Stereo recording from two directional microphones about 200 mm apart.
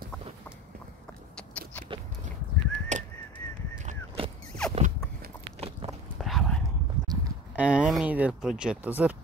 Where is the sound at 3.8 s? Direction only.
30° right (ahead or behind).